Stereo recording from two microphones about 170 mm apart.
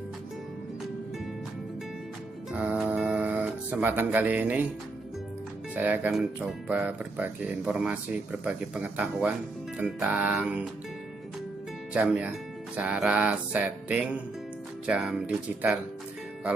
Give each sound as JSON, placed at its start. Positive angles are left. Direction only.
{"t": 2.5, "sound": "music", "side_deg": -10}
{"t": 5.8, "sound": "speech", "side_deg": -10}
{"t": 11.9, "sound": "speech", "side_deg": -10}